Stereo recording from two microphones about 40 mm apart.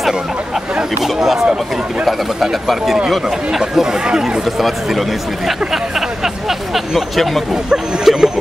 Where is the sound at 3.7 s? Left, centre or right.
Centre.